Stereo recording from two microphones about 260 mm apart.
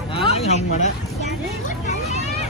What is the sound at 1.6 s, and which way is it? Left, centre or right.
Vehicle, left.